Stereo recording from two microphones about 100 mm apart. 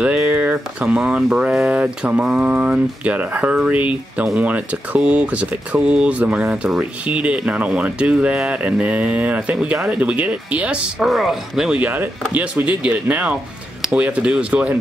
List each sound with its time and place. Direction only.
0.3 s a sound: 15° right (ahead or behind)
0.8 s speech: 5° right (ahead or behind)
11.8 s speech: 20° right (ahead or behind)